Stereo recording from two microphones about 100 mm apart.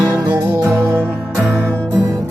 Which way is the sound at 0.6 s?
25° right (ahead or behind).